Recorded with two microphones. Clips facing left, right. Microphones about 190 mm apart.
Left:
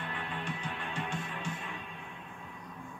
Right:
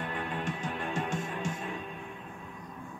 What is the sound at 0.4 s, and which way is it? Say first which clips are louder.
Music: right 4 dB; 45° right (ahead or behind).